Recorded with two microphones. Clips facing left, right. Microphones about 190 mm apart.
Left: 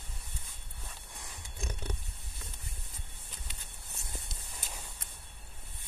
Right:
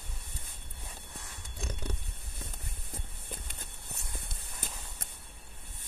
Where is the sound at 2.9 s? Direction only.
50° right (ahead or behind).